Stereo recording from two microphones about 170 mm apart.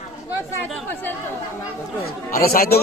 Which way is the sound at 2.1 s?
60° left (ahead or behind).